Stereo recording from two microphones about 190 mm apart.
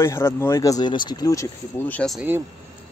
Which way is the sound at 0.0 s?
15° left (ahead or behind).